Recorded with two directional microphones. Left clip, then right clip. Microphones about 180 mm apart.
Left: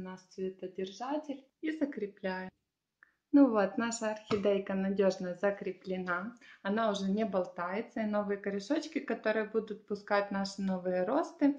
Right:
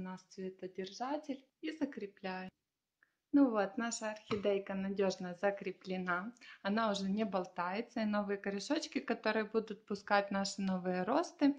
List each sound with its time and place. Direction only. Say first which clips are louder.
0.0 s speech: left 6 dB; 50° right (ahead or behind); by 2.5 s 35° right (ahead or behind)
3.3 s speech: left 5 dB; 15° right (ahead or behind); by 11.5 s 40° right (ahead or behind)